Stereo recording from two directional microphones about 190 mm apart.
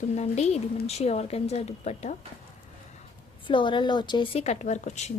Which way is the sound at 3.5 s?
25° left (ahead or behind).